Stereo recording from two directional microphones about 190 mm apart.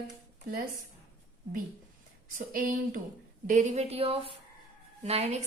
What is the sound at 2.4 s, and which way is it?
A woman's voice, 45° right (ahead or behind).